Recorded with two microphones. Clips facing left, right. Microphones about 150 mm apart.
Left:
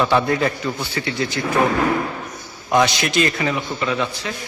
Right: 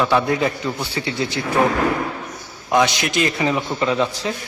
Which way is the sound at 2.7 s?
10° right (ahead or behind).